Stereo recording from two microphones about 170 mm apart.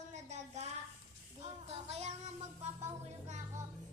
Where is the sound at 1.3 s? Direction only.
40° right (ahead or behind).